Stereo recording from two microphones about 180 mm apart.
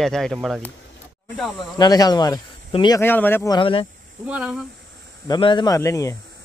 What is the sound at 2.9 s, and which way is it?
Speech, 10° left (ahead or behind).